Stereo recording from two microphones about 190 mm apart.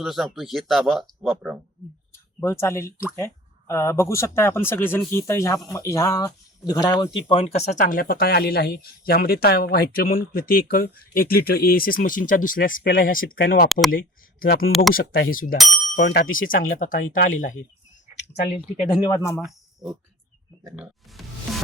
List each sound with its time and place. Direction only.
0.0 s speech: centre (ahead or behind)
2.4 s speech: 15° left (ahead or behind); by 15.5 s 45° left (ahead or behind)
16.0 s speech: 75° left (ahead or behind)
16.4 s speech: 45° left (ahead or behind)
18.9 s speech: 20° left (ahead or behind)
19.5 s speech: centre (ahead or behind)